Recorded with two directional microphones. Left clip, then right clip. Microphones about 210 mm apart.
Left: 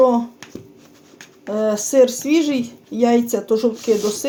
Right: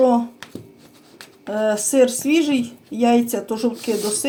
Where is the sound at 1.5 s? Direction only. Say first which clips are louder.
Left 2 dB; 30° left (ahead or behind).